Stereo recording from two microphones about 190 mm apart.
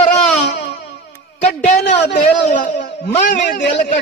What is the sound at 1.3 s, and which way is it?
Speech, 35° left (ahead or behind).